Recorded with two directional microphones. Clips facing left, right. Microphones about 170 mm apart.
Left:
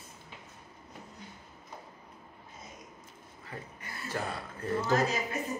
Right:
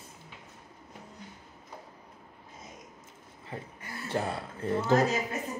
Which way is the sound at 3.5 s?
25° right (ahead or behind).